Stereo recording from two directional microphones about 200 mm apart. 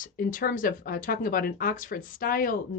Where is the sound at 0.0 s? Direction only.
45° left (ahead or behind).